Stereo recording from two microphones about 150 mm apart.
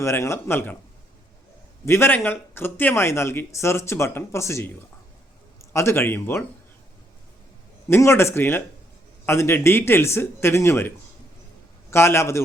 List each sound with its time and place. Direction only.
0.0 s speech: 20° left (ahead or behind)
1.8 s speech: 15° left (ahead or behind)
5.7 s speech: 15° left (ahead or behind)
7.9 s speech: 15° left (ahead or behind)